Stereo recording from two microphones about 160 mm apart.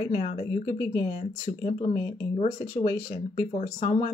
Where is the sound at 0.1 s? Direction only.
40° left (ahead or behind).